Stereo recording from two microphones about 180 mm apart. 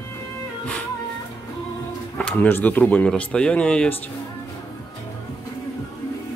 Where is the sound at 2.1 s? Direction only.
5° left (ahead or behind).